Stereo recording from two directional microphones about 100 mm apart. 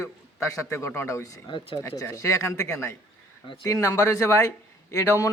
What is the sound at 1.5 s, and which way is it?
Speech, 55° left (ahead or behind).